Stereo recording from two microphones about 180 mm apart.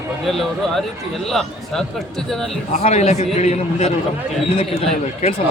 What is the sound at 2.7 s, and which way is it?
Speech, 40° left (ahead or behind).